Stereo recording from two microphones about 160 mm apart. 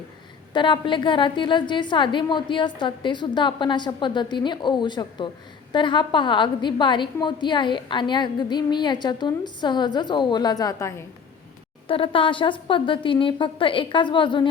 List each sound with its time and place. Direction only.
0.5 s a woman's voice: 30° left (ahead or behind)
11.9 s a woman's voice: 35° left (ahead or behind)